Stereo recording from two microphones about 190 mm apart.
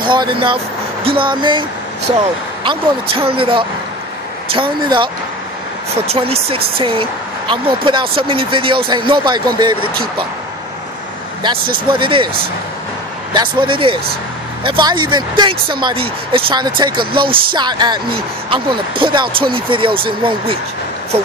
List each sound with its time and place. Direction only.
0.0 s speech: 25° right (ahead or behind)
11.7 s speech: 25° right (ahead or behind)
13.3 s speech: 25° right (ahead or behind)
17.0 s speech: 50° right (ahead or behind)
17.3 s speech: 25° right (ahead or behind)